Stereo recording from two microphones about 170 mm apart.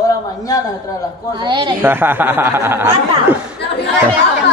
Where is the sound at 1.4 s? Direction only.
25° right (ahead or behind).